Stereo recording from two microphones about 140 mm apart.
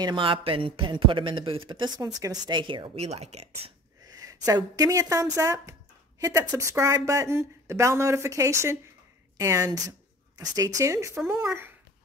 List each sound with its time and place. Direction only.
0.0 s a man's voice: 35° right (ahead or behind)
4.1 s speech: 25° right (ahead or behind)